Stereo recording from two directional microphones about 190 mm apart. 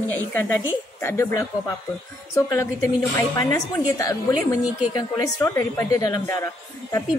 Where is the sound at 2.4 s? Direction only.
15° left (ahead or behind).